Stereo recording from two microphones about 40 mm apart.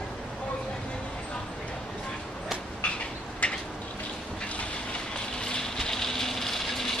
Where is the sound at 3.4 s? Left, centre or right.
Left.